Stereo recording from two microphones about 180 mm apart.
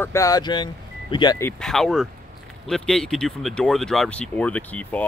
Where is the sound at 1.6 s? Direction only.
Centre (ahead or behind).